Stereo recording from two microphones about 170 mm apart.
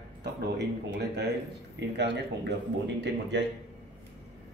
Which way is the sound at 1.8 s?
90° right.